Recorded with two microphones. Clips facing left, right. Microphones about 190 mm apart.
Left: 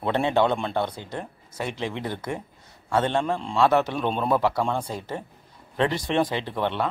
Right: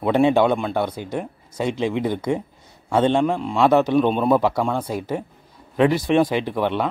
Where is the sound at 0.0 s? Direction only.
10° right (ahead or behind).